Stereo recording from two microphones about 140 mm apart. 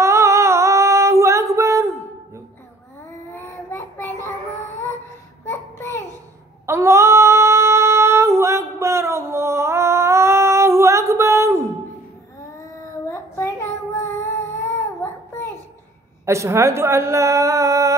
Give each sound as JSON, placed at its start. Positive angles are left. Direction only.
{"t": 0.0, "sound": "singing", "side_deg": -20}
{"t": 3.3, "sound": "child singing", "side_deg": 15}
{"t": 5.4, "sound": "a sound", "side_deg": 15}
{"t": 6.6, "sound": "female singing", "side_deg": -20}
{"t": 13.1, "sound": "child singing", "side_deg": 15}
{"t": 16.3, "sound": "a sound", "side_deg": -20}